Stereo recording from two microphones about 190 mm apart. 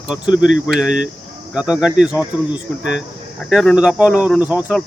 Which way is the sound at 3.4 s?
Centre (ahead or behind).